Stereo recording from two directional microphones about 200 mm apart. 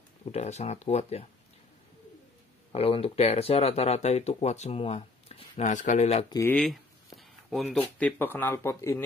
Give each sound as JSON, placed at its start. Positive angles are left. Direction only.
{"t": 0.2, "sound": "speech", "side_deg": 35}
{"t": 2.7, "sound": "speech", "side_deg": 30}
{"t": 6.2, "sound": "speech", "side_deg": 20}
{"t": 6.5, "sound": "speech", "side_deg": 0}
{"t": 7.2, "sound": "a sound", "side_deg": 0}
{"t": 8.0, "sound": "speech", "side_deg": 10}